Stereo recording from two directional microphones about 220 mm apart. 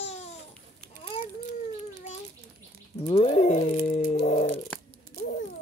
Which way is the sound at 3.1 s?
30° left (ahead or behind).